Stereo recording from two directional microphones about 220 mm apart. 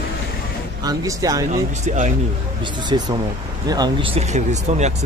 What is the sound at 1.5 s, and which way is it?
Speech, 35° right (ahead or behind).